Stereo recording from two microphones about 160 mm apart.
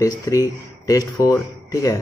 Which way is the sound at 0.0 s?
20° left (ahead or behind).